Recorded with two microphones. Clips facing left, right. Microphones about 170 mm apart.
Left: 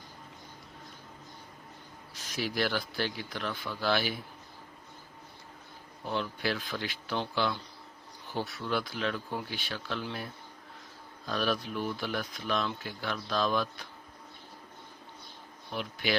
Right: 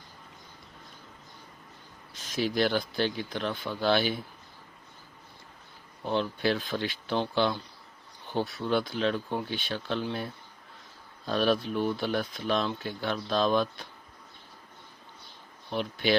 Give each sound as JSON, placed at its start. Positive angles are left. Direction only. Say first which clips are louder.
{"t": 2.1, "sound": "speech", "louder": "right 5 dB", "side_deg": -25}
{"t": 6.1, "sound": "speech", "louder": "right 5 dB", "side_deg": -25}
{"t": 11.3, "sound": "speech", "louder": "right 5 dB", "side_deg": -30}
{"t": 15.7, "sound": "speech", "louder": "right 5 dB", "side_deg": -30}